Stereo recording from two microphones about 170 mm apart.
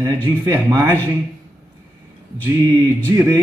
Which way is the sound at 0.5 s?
10° right (ahead or behind).